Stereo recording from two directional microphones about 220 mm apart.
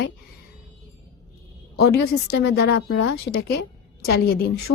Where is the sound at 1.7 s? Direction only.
45° left (ahead or behind).